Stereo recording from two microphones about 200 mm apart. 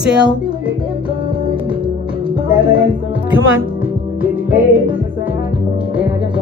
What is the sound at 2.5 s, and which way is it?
Music, 25° right (ahead or behind).